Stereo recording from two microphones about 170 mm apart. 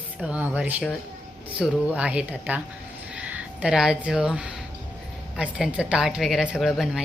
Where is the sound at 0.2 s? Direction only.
10° right (ahead or behind).